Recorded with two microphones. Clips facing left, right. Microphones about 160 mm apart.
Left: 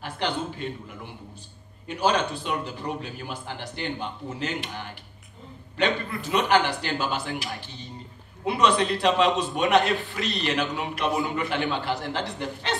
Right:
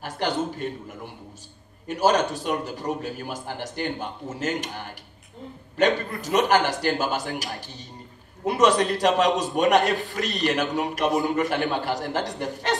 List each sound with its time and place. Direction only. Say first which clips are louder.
0.0 s a man's voice: right 3 dB; 45° right (ahead or behind)